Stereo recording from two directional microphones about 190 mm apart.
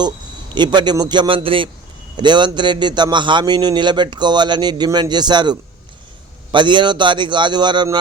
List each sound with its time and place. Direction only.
0.5 s a man's voice: 25° right (ahead or behind)